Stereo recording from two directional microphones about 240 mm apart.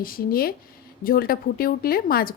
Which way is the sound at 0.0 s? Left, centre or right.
Left.